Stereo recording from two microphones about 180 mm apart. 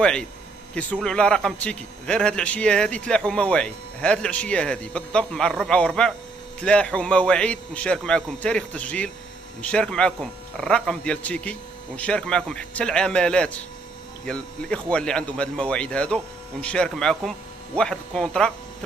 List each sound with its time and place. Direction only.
0.0 s a man's voice: 5° left (ahead or behind)